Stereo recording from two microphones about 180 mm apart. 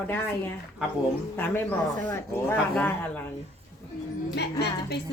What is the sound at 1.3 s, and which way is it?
Speech, 10° left (ahead or behind).